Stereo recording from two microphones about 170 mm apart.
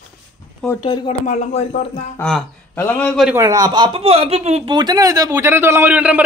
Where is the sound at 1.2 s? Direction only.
45° left (ahead or behind).